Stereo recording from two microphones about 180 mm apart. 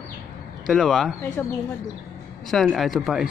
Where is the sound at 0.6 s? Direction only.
Centre (ahead or behind).